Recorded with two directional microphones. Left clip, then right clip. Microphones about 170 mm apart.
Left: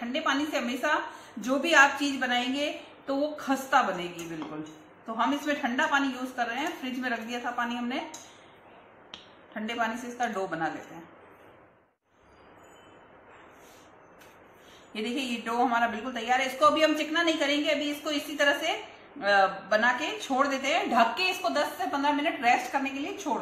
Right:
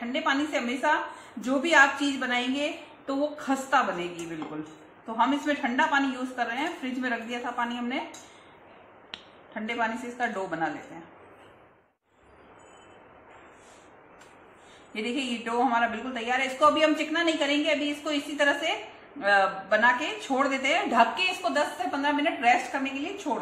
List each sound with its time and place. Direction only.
0.0 s a man's voice: centre (ahead or behind)
9.5 s a man's voice: centre (ahead or behind)
15.0 s a man's voice: centre (ahead or behind)